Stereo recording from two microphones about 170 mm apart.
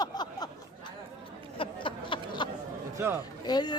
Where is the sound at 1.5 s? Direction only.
30° left (ahead or behind).